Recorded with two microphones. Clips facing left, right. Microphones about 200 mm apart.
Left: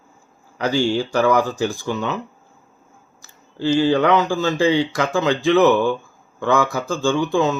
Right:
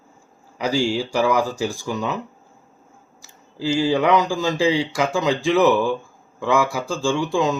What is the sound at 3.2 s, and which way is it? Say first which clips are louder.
Speech: left 3 dB; 10° right (ahead or behind).